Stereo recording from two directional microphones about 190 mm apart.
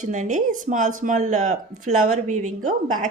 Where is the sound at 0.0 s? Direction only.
40° right (ahead or behind).